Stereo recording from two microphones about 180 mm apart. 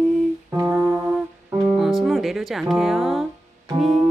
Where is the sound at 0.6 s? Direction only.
10° right (ahead or behind).